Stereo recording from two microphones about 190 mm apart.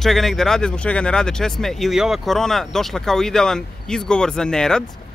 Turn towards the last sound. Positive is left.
turn(degrees=5)  # may be behind; listen again after turning